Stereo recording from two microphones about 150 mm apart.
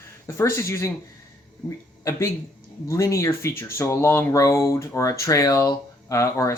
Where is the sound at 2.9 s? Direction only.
20° left (ahead or behind).